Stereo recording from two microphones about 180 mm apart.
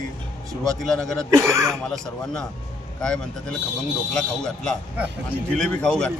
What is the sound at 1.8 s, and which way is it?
Speech, 5° left (ahead or behind).